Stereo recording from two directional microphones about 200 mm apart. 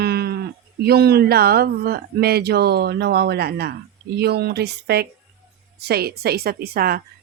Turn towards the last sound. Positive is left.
turn(degrees=-50)  # may be behind; listen again after turning